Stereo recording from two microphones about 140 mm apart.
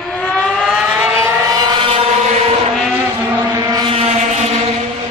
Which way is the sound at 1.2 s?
30° right (ahead or behind).